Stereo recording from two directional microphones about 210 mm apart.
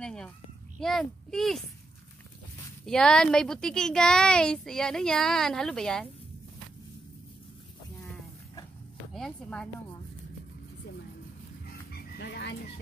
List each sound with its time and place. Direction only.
0.0 s a sound: 5° left (ahead or behind)
0.7 s speech: centre (ahead or behind)
2.8 s speech: 5° left (ahead or behind)
9.1 s speech: 5° left (ahead or behind)
11.6 s dog: 50° left (ahead or behind)